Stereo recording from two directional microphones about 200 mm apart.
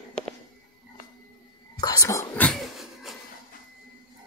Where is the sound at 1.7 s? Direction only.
20° left (ahead or behind); by 3.1 s centre (ahead or behind).